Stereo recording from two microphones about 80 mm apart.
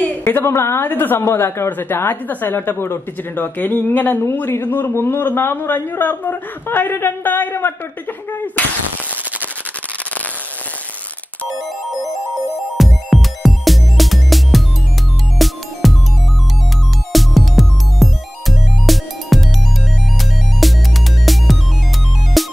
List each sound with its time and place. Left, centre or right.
0.0 s a woman's voice: left
12.7 s music: centre
17.1 s music: centre
20.6 s music: centre